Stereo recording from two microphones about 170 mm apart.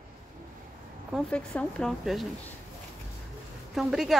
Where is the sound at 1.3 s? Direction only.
5° left (ahead or behind).